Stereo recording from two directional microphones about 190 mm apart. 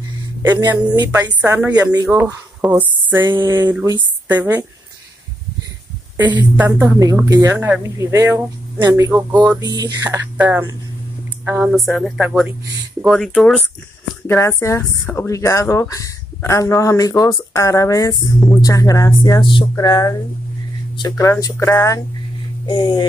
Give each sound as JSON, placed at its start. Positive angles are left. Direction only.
{"t": 0.6, "sound": "speech", "side_deg": -20}
{"t": 1.2, "sound": "a woman's voice", "side_deg": -10}
{"t": 3.3, "sound": "speech", "side_deg": -25}
{"t": 3.5, "sound": "a woman's voice", "side_deg": -10}
{"t": 6.5, "sound": "a woman's voice", "side_deg": -10}
{"t": 7.5, "sound": "a woman's voice", "side_deg": -5}
{"t": 10.0, "sound": "a woman's voice", "side_deg": -10}
{"t": 14.2, "sound": "speech", "side_deg": 15}
{"t": 21.2, "sound": "speech", "side_deg": 15}